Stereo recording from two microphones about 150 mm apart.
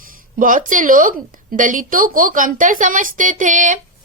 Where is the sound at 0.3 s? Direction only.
60° right (ahead or behind).